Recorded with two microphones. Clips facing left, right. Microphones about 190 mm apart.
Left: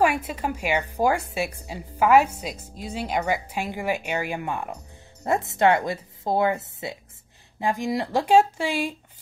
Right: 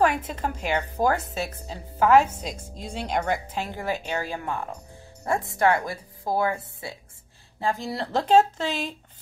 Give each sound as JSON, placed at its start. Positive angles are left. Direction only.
{"t": 0.0, "sound": "a woman's voice", "side_deg": 10}